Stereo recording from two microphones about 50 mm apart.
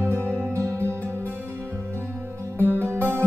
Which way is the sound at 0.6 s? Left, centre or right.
Right.